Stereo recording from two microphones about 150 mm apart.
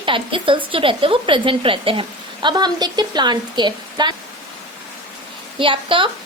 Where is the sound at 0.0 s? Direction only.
35° right (ahead or behind).